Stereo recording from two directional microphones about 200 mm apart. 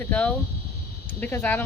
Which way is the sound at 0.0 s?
5° left (ahead or behind).